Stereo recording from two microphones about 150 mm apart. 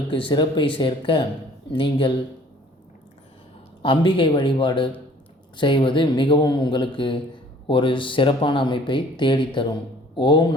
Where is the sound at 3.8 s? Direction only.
35° left (ahead or behind).